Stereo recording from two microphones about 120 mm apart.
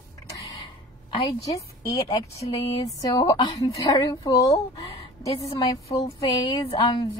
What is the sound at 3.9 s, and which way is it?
Speech, 30° left (ahead or behind).